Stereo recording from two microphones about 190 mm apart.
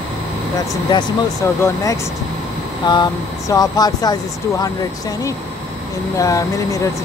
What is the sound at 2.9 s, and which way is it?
Speech, 20° left (ahead or behind).